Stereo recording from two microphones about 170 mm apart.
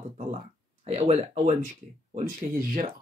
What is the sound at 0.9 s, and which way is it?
Speech, 40° right (ahead or behind).